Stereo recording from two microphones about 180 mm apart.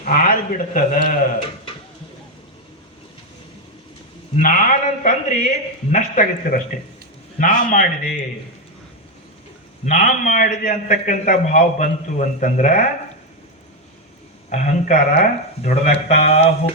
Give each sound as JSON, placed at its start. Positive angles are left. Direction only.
{"t": 0.0, "sound": "a man's voice", "side_deg": 50}
{"t": 4.4, "sound": "a man's voice", "side_deg": 50}
{"t": 9.8, "sound": "a man's voice", "side_deg": 45}
{"t": 14.5, "sound": "speech", "side_deg": 45}